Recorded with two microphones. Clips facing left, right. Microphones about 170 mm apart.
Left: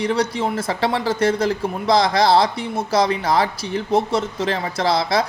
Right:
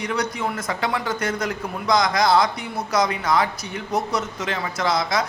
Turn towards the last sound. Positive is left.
turn(degrees=30)  # may be behind; listen again after turning